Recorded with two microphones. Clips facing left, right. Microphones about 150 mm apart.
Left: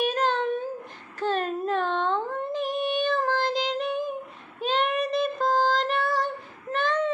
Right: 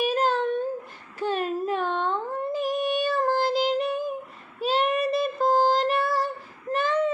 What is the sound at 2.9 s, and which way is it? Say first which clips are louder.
Child singing: right 1 dB; 5° right (ahead or behind).